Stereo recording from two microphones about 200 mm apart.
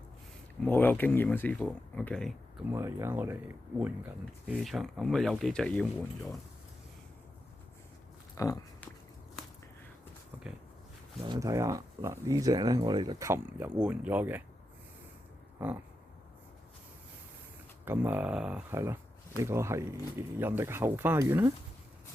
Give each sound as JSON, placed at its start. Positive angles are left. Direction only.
{"t": 0.7, "sound": "speech", "side_deg": 10}
{"t": 2.7, "sound": "speech", "side_deg": -10}
{"t": 4.5, "sound": "speech", "side_deg": 0}
{"t": 8.4, "sound": "speech", "side_deg": 15}
{"t": 11.2, "sound": "speech", "side_deg": -15}
{"t": 17.8, "sound": "speech", "side_deg": -10}